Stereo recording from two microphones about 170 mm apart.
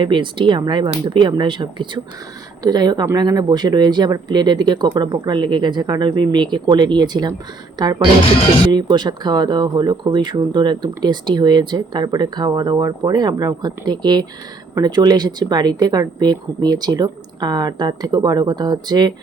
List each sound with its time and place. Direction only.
0.0 s speech: 30° right (ahead or behind)